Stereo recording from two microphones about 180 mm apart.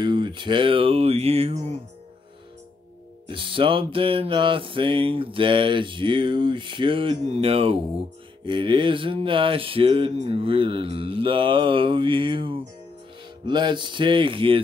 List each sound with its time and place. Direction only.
0.0 s speech: 25° right (ahead or behind)
3.3 s music: 30° right (ahead or behind)